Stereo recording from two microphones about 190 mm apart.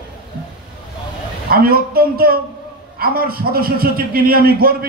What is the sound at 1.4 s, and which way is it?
A man's voice, 50° right (ahead or behind).